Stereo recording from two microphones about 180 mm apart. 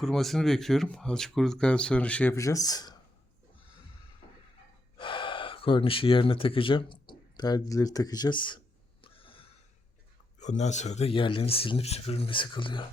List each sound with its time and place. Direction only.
0.0 s speech: centre (ahead or behind); by 3.0 s 20° left (ahead or behind)
4.9 s gasp: 25° left (ahead or behind)
10.4 s speech: 40° left (ahead or behind)